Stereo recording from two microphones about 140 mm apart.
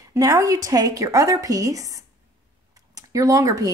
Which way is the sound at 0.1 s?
20° right (ahead or behind).